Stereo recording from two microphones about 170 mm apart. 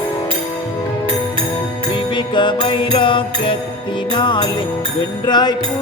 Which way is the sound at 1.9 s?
30° left (ahead or behind).